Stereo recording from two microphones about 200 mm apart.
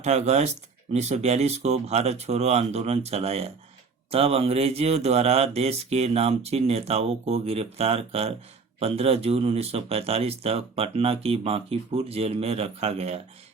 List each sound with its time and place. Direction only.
0.0 s speech: 35° right (ahead or behind)